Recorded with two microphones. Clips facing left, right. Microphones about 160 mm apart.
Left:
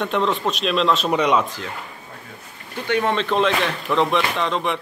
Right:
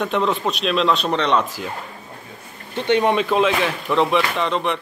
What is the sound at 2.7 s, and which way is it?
Speech, 20° right (ahead or behind).